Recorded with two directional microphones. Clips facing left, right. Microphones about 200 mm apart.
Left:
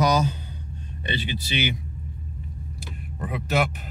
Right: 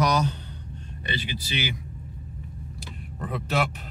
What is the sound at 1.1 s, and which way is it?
Speech, 20° left (ahead or behind).